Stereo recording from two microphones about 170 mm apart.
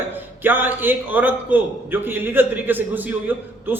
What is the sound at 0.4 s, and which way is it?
A man's voice, 10° right (ahead or behind).